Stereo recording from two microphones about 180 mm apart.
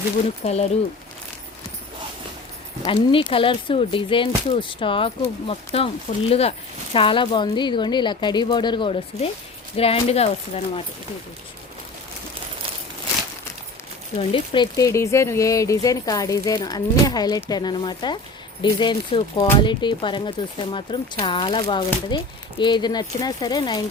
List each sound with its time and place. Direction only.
0.4 s speech: 35° left (ahead or behind)
2.8 s speech: 30° left (ahead or behind)
14.2 s speech: 30° left (ahead or behind)